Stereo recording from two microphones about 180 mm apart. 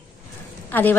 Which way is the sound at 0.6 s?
10° left (ahead or behind).